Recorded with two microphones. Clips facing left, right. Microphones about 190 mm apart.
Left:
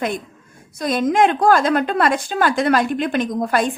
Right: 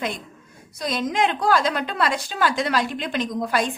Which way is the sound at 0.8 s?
50° left (ahead or behind).